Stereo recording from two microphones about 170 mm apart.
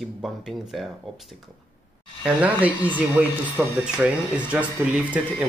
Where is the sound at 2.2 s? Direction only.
10° right (ahead or behind).